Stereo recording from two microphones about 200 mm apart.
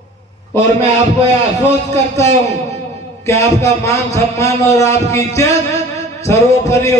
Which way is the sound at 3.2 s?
15° left (ahead or behind).